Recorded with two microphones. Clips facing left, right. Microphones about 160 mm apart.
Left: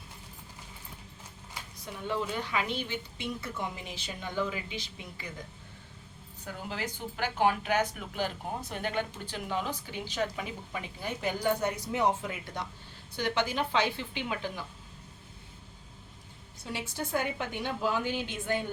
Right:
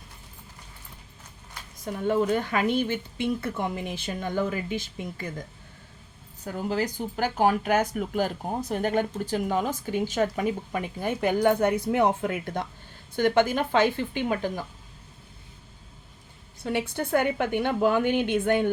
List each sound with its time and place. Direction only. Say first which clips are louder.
1.8 s speech: right 9 dB; 50° right (ahead or behind)
6.4 s speech: right 9 dB; 45° right (ahead or behind)
16.6 s a woman's voice: right 9 dB; 60° right (ahead or behind)